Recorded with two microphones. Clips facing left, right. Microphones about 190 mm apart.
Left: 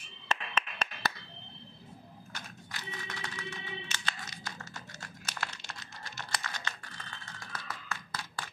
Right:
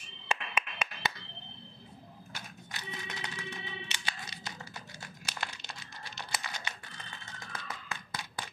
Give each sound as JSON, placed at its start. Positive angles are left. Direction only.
{"t": 0.3, "sound": "clapping", "side_deg": -10}
{"t": 2.7, "sound": "music", "side_deg": -20}
{"t": 6.4, "sound": "a sound", "side_deg": -15}